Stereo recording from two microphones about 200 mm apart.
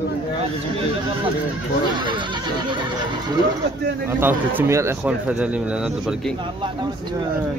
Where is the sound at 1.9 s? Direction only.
25° right (ahead or behind).